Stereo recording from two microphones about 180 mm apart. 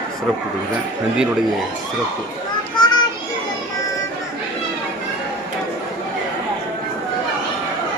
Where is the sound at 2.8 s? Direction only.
25° left (ahead or behind).